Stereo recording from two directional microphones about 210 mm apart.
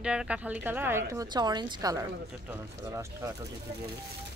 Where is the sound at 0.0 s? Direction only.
5° right (ahead or behind).